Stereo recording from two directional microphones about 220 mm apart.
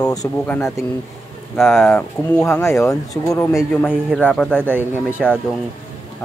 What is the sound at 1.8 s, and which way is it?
Speech, 5° left (ahead or behind).